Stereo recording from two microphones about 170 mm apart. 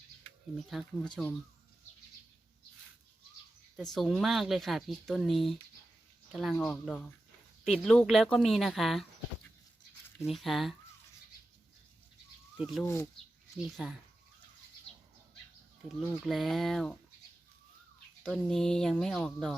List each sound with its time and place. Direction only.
0.7 s speech: centre (ahead or behind)
3.8 s speech: centre (ahead or behind)
10.2 s speech: centre (ahead or behind)
12.5 s speech: 5° right (ahead or behind)
12.8 s speech: 15° left (ahead or behind)
13.6 s speech: centre (ahead or behind)
16.0 s speech: centre (ahead or behind)
18.2 s speech: 5° left (ahead or behind)